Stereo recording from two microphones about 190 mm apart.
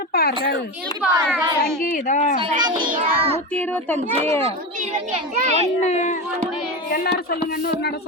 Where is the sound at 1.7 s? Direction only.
5° left (ahead or behind).